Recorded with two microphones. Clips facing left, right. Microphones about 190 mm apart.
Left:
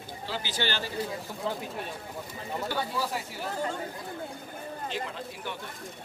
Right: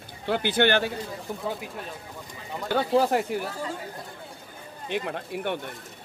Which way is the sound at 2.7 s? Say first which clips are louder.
Right 13 dB; 60° right (ahead or behind).